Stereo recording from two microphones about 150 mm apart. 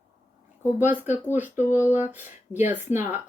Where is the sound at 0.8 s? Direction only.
15° right (ahead or behind).